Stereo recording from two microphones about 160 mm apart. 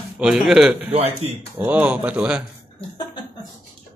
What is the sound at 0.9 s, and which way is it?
Speech, 40° right (ahead or behind).